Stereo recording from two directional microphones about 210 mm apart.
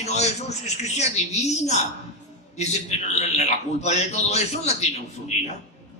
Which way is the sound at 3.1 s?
30° left (ahead or behind).